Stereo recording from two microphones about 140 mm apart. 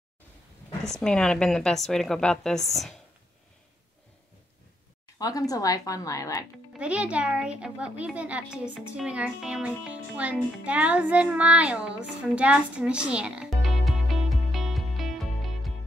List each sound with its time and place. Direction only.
0.8 s a woman's voice: 5° left (ahead or behind)
5.2 s a woman's voice: 25° left (ahead or behind)
6.7 s a child's voice: 10° right (ahead or behind)